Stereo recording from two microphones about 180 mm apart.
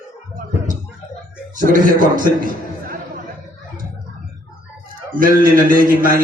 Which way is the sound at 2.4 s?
50° right (ahead or behind).